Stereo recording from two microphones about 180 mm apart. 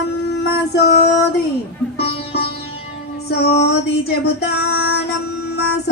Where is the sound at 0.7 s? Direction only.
60° left (ahead or behind).